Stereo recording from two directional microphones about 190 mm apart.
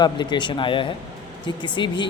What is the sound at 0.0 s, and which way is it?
Speech, 25° left (ahead or behind).